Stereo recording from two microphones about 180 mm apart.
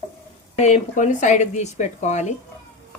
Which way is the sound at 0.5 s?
40° left (ahead or behind).